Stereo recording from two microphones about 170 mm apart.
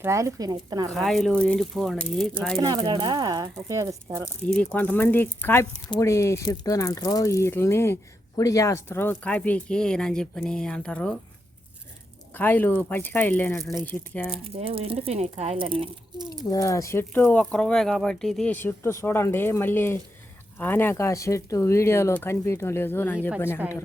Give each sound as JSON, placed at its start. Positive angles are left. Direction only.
{"t": 0.0, "sound": "speech", "side_deg": -15}
{"t": 0.9, "sound": "speech", "side_deg": 0}
{"t": 2.6, "sound": "speech", "side_deg": -25}
{"t": 4.4, "sound": "speech", "side_deg": 5}
{"t": 12.3, "sound": "speech", "side_deg": 10}
{"t": 14.4, "sound": "speech", "side_deg": -35}
{"t": 16.5, "sound": "speech", "side_deg": 20}